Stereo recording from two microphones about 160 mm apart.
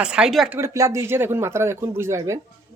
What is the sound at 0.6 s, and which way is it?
Speech, 20° right (ahead or behind).